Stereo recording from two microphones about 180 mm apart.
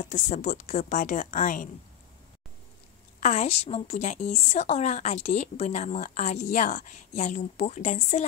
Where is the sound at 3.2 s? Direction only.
40° left (ahead or behind).